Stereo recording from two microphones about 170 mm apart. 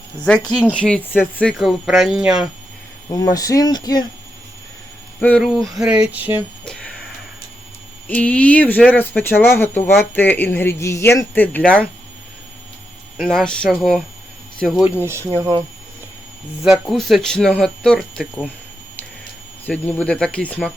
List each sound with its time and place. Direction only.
0.2 s speech: 5° left (ahead or behind)
3.1 s speech: 20° left (ahead or behind)
5.2 s speech: 5° left (ahead or behind)
6.7 s a sound: 5° left (ahead or behind)
8.0 s speech: 10° left (ahead or behind)
13.1 s speech: 5° left (ahead or behind)
14.8 s speech: 10° right (ahead or behind)
16.6 s speech: centre (ahead or behind)
19.6 s speech: 10° left (ahead or behind)